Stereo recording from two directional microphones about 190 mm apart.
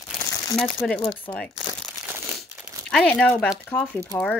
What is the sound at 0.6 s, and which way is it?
Speech, centre (ahead or behind).